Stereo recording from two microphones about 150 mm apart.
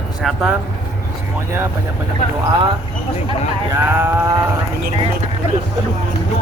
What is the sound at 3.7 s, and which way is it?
Livestock, 15° right (ahead or behind).